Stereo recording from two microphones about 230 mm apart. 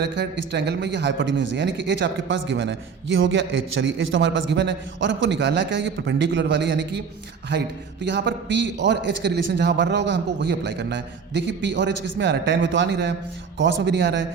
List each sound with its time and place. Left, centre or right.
0.0 s a man's voice: right
8.0 s a man's voice: right